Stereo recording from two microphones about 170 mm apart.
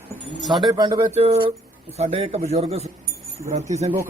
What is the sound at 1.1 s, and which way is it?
A man's voice, 40° right (ahead or behind).